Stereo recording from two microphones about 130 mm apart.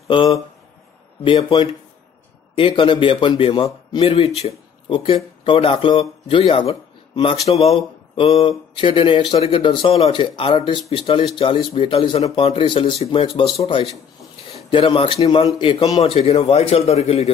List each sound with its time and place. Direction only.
0.1 s a man's voice: 40° left (ahead or behind); by 17.3 s 55° left (ahead or behind)